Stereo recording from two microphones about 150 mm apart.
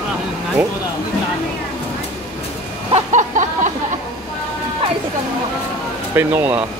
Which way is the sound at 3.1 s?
55° right (ahead or behind).